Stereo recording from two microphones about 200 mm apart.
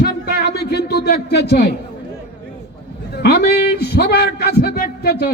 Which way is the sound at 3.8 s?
55° left (ahead or behind).